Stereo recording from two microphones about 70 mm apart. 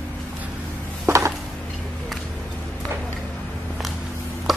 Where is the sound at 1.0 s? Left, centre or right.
Right.